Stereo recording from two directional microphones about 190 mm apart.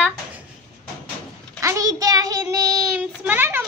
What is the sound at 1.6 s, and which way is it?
Child singing, 15° right (ahead or behind).